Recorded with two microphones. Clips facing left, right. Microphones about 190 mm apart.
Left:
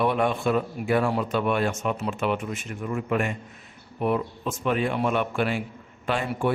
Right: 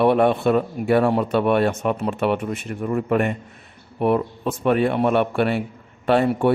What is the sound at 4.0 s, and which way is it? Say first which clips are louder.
A man's voice: right 5 dB; 55° right (ahead or behind).